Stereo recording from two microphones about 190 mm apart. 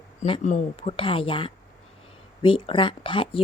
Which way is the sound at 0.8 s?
25° left (ahead or behind).